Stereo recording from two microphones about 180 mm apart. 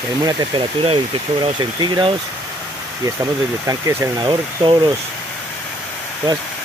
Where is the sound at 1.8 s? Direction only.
25° right (ahead or behind).